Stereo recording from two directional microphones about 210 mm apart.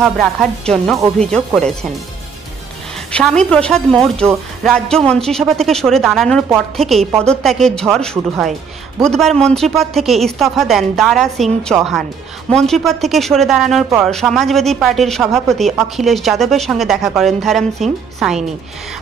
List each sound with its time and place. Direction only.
0.0 s speech: centre (ahead or behind)
3.1 s speech: 5° left (ahead or behind)